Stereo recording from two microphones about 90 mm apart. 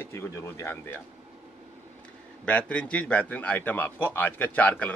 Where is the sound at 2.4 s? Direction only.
15° left (ahead or behind).